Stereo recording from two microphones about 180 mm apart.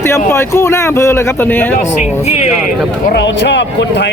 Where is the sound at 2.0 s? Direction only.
35° left (ahead or behind).